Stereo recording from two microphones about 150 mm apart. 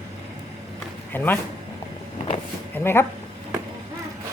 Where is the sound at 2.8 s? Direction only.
15° left (ahead or behind).